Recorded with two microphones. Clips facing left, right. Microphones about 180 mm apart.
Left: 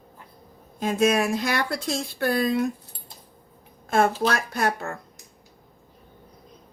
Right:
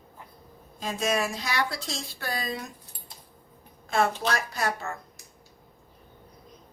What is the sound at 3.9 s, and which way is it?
Speech, 50° left (ahead or behind).